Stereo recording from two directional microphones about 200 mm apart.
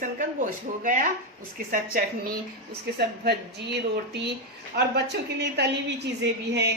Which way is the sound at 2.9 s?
55° right (ahead or behind).